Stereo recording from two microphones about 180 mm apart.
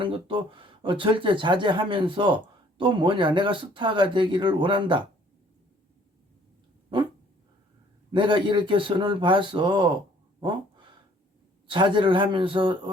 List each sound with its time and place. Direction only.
0.0 s speech: 30° right (ahead or behind)
8.1 s speech: 25° right (ahead or behind)
11.7 s speech: 25° right (ahead or behind)